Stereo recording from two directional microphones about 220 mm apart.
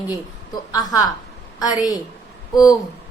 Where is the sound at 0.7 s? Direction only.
15° left (ahead or behind).